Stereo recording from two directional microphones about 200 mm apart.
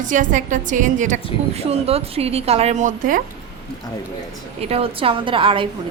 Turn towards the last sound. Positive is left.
turn(degrees=-25)  # may be behind; listen again after turning